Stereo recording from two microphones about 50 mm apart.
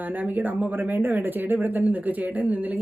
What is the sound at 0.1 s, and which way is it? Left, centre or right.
Speech, right.